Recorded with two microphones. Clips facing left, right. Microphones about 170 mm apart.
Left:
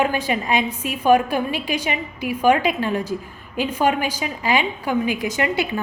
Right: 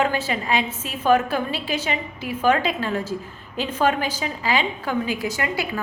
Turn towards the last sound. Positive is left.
turn(degrees=20)  # may be behind; listen again after turning